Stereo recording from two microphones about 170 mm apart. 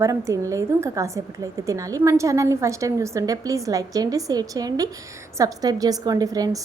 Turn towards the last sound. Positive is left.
turn(degrees=-20)  # may be behind; listen again after turning